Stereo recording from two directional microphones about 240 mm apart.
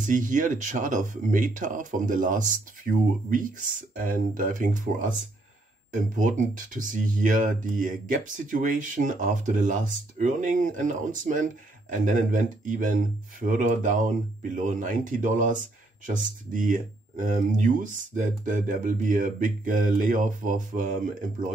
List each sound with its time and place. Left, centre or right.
0.0 s speech: right